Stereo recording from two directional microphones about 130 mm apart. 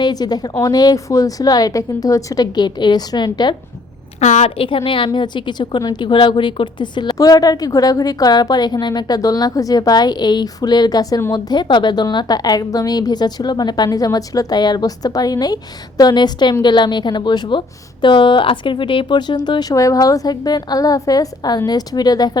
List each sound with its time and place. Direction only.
0.0 s a woman's voice: 30° left (ahead or behind)
4.2 s a woman's voice: 65° left (ahead or behind)
4.5 s a woman's voice: 40° left (ahead or behind)